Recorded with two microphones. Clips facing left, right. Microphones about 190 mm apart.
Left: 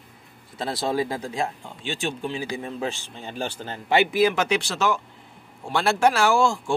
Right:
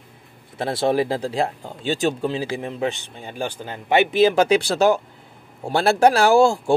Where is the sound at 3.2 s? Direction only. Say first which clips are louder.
Right 2 dB; 10° right (ahead or behind).